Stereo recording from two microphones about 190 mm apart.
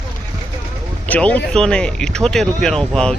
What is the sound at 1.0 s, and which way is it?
Speech, 10° left (ahead or behind).